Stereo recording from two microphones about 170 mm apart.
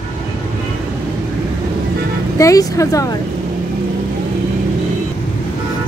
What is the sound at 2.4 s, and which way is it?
Speech, 20° left (ahead or behind).